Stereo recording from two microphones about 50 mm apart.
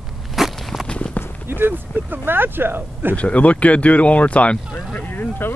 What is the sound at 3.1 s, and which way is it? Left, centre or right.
Speech, left.